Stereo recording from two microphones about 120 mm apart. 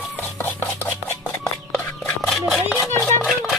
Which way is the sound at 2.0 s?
Centre (ahead or behind).